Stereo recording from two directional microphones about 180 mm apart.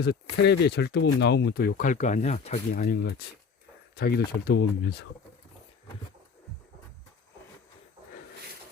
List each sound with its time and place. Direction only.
0.0 s speech: 65° left (ahead or behind)